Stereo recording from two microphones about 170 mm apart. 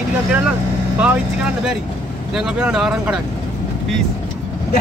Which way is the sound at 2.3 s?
5° right (ahead or behind).